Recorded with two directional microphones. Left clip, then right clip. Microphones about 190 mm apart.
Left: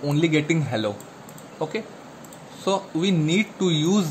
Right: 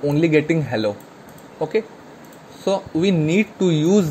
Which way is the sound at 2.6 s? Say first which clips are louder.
Right 4 dB; 10° right (ahead or behind).